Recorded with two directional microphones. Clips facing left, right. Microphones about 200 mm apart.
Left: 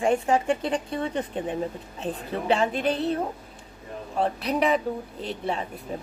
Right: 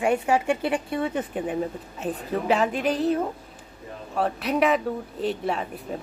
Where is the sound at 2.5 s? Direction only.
30° left (ahead or behind).